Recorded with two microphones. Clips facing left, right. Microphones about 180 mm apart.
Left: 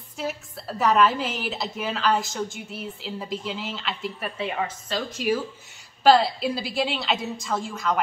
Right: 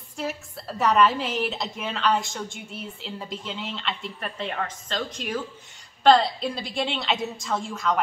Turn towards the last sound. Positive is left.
turn(degrees=0)  # may be behind; listen again after turning